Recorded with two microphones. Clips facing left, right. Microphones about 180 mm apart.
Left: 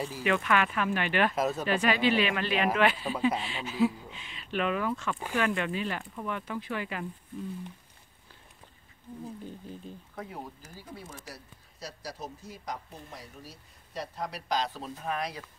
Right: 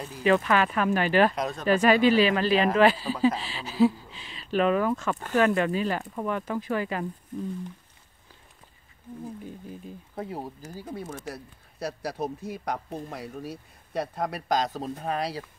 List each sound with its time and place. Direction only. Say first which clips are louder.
0.2 s speech: right 6 dB; 35° right (ahead or behind)
1.3 s speech: left 1 dB; 5° left (ahead or behind)
1.7 s speech: right 9 dB; 40° right (ahead or behind)
9.2 s speech: right 3 dB; 10° right (ahead or behind)
10.1 s speech: right 7 dB; 35° right (ahead or behind)
10.8 s speech: right 9 dB; 45° right (ahead or behind)